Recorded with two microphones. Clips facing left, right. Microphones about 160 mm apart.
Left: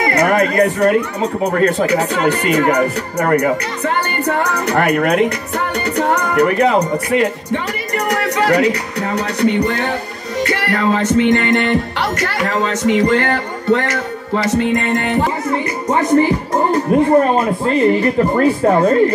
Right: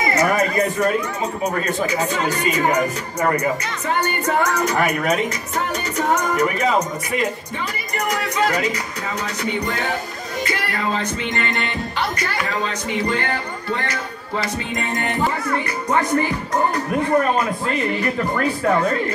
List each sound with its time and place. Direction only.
0.0 s speech: 60° left (ahead or behind)
5.8 s music: 60° left (ahead or behind)
15.5 s speech: 25° left (ahead or behind)